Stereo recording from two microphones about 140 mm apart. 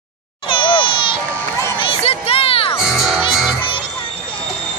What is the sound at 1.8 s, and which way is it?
Crowd, 40° left (ahead or behind).